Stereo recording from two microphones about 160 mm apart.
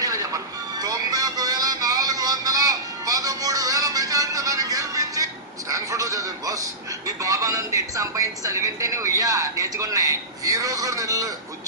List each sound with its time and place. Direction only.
0.0 s music: 20° right (ahead or behind)
7.2 s speech: 20° right (ahead or behind)